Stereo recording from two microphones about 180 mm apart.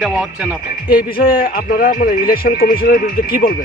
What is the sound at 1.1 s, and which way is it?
A man's voice, 55° left (ahead or behind).